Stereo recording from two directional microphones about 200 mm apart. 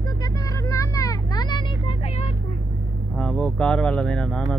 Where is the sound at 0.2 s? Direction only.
15° left (ahead or behind).